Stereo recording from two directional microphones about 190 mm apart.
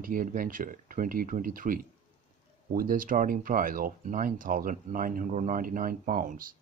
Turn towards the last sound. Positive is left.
turn(degrees=-45)  # may be behind; listen again after turning